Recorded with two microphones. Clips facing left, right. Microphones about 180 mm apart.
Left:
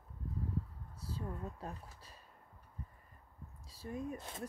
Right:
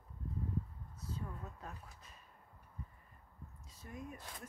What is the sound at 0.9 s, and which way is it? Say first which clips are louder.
Speech: left 3 dB; 30° left (ahead or behind).